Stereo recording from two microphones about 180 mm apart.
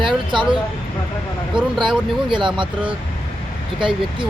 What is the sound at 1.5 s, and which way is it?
Speech, 25° right (ahead or behind).